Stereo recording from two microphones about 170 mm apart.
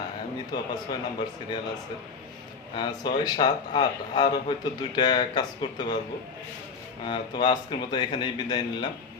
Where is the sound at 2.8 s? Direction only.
25° left (ahead or behind).